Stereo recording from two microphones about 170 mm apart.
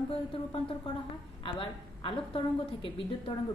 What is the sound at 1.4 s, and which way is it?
A woman's voice, 30° left (ahead or behind).